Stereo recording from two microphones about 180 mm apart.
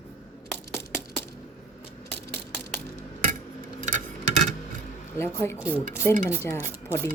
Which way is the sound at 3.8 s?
40° right (ahead or behind).